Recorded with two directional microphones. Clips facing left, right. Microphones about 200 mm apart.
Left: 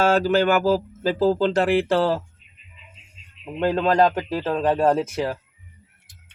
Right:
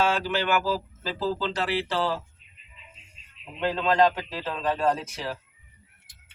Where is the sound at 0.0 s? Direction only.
45° left (ahead or behind).